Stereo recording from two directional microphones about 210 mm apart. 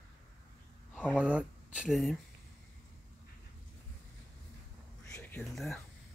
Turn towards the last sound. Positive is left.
turn(degrees=0)  # may be behind; listen again after turning